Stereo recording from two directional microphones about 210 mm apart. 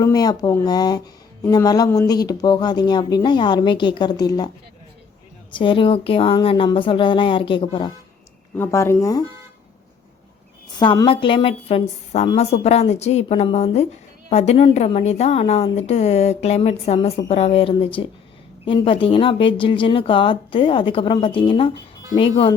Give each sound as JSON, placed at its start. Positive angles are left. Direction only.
{"t": 0.0, "sound": "a woman's voice", "side_deg": 20}
{"t": 5.5, "sound": "a woman's voice", "side_deg": 25}
{"t": 8.5, "sound": "speech", "side_deg": 10}
{"t": 10.8, "sound": "a woman's voice", "side_deg": 20}